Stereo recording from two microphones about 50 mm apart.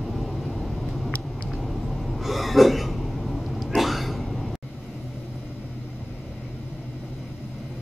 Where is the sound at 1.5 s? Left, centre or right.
Centre.